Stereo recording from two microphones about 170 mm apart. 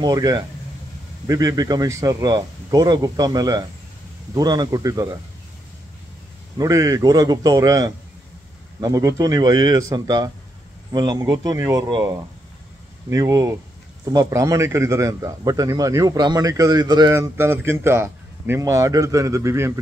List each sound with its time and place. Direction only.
0.0 s a man's voice: 20° right (ahead or behind)
6.6 s a man's voice: 20° right (ahead or behind)
13.1 s a man's voice: 20° right (ahead or behind)